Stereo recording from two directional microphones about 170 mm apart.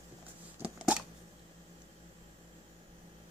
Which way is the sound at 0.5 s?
10° right (ahead or behind).